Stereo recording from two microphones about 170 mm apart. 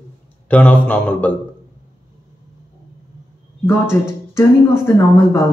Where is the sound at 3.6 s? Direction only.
15° left (ahead or behind).